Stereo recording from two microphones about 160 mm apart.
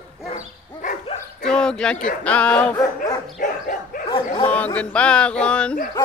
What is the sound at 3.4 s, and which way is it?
Dog, 55° left (ahead or behind).